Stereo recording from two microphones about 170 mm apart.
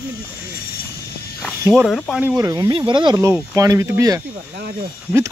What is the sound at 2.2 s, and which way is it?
Speech, 20° right (ahead or behind).